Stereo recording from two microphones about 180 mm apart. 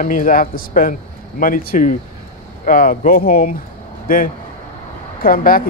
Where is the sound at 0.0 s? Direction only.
50° left (ahead or behind).